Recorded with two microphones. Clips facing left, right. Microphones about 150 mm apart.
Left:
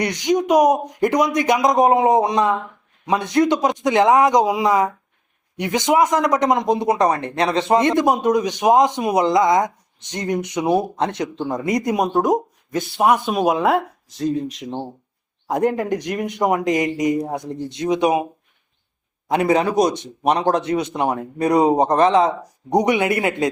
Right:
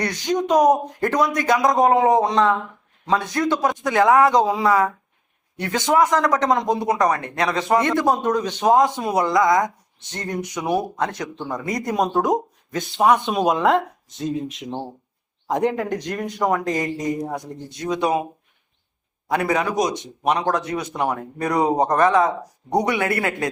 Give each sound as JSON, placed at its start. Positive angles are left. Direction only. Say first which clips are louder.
{"t": 0.0, "sound": "speech", "louder": "left 3 dB", "side_deg": 15}
{"t": 12.1, "sound": "speech", "louder": "left 2 dB", "side_deg": 5}
{"t": 19.3, "sound": "speech", "louder": "left 4 dB", "side_deg": 25}